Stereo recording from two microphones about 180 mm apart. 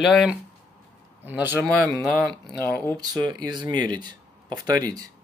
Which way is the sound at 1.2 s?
10° right (ahead or behind).